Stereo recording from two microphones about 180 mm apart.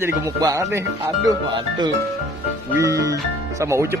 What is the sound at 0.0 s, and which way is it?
Speech, 20° right (ahead or behind).